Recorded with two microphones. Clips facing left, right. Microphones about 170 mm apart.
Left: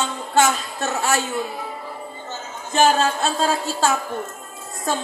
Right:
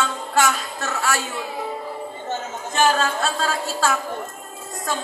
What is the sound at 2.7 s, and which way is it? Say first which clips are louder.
Music: left 2 dB; 25° left (ahead or behind).